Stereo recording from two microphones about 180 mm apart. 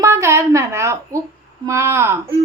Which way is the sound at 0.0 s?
15° right (ahead or behind).